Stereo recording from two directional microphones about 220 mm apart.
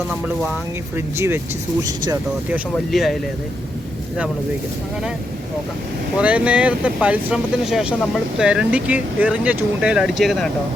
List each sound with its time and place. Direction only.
0.9 s speech: 10° right (ahead or behind)
2.7 s speech: centre (ahead or behind)
6.1 s speech: 5° right (ahead or behind)